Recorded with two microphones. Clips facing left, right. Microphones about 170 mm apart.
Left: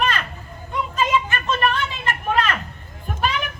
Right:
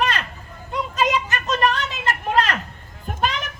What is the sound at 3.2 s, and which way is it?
Children playing, 40° right (ahead or behind).